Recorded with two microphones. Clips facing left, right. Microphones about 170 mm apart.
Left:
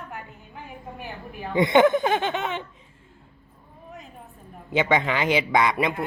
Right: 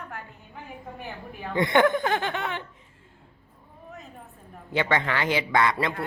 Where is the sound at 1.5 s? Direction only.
20° left (ahead or behind).